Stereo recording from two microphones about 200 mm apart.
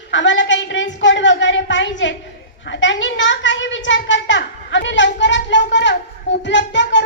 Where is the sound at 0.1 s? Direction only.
65° left (ahead or behind).